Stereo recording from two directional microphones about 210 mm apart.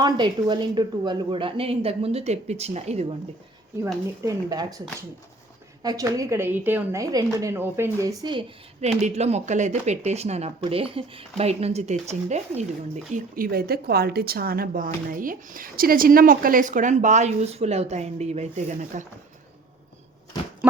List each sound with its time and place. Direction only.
0.0 s a woman's voice: 20° right (ahead or behind)
4.2 s speech: 15° right (ahead or behind)
5.8 s a woman's voice: 15° right (ahead or behind); by 12.6 s 30° right (ahead or behind)
13.1 s speech: 45° right (ahead or behind)